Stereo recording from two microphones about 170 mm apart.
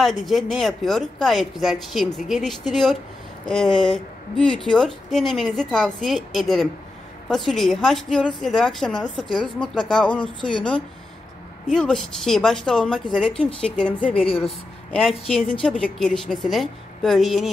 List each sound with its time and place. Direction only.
0.0 s a woman's voice: centre (ahead or behind)
9.2 s a woman's voice: 30° left (ahead or behind)
9.8 s a woman's voice: 5° left (ahead or behind)
14.1 s a woman's voice: 35° left (ahead or behind)
14.9 s a woman's voice: centre (ahead or behind)